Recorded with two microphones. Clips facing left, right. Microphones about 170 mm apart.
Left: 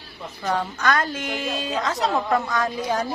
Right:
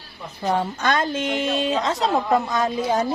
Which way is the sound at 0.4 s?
25° right (ahead or behind).